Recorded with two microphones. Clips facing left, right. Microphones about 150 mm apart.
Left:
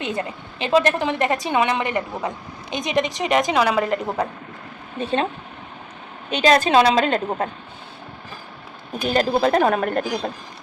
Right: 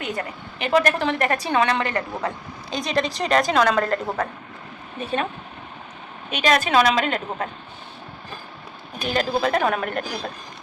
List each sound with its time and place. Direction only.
0.0 s a woman's voice: 25° left (ahead or behind)
4.9 s a woman's voice: 25° left (ahead or behind)
6.3 s a woman's voice: 30° left (ahead or behind)
9.1 s a woman's voice: 35° left (ahead or behind)
10.0 s a woman's voice: 20° left (ahead or behind)